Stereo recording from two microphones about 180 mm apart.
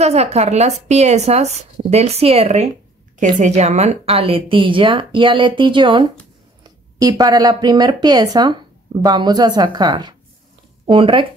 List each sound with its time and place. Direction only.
0.0 s speech: 35° right (ahead or behind)